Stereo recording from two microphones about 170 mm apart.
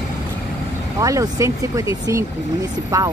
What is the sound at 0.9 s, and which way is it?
Speech, 20° right (ahead or behind).